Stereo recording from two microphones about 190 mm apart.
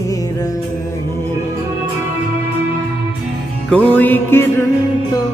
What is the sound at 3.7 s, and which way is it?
Music, 10° left (ahead or behind).